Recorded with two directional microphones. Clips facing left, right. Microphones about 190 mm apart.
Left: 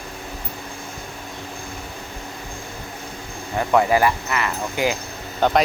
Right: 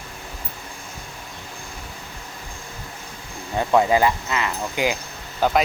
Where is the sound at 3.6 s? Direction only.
20° right (ahead or behind).